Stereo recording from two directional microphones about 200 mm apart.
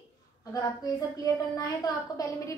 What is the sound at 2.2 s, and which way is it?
Speech, 15° left (ahead or behind).